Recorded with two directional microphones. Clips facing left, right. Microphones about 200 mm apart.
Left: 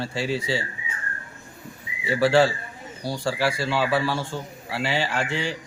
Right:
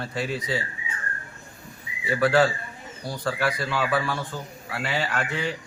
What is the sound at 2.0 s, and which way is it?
A man's voice, 30° left (ahead or behind).